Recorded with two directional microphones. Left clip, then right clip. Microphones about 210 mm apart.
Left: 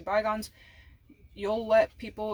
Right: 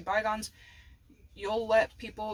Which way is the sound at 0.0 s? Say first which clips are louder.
Left 2 dB; 20° left (ahead or behind).